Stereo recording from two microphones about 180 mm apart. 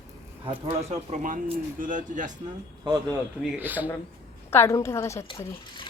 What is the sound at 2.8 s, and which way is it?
Speech, 20° right (ahead or behind).